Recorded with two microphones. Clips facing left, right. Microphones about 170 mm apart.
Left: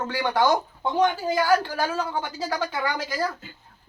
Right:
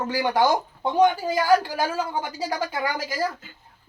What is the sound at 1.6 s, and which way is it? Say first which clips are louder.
Speech: right 1 dB; 10° right (ahead or behind).